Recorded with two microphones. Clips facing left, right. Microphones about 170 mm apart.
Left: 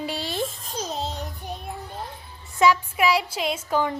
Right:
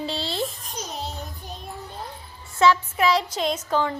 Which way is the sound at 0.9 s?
25° left (ahead or behind).